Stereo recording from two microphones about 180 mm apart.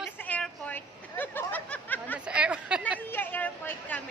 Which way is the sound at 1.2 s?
10° left (ahead or behind).